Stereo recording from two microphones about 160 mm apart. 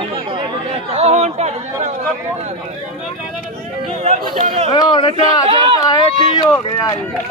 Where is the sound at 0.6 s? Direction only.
45° right (ahead or behind).